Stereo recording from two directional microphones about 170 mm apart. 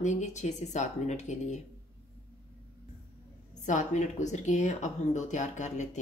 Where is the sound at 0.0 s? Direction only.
45° left (ahead or behind).